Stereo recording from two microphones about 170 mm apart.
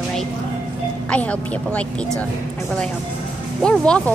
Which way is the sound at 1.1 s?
5° left (ahead or behind).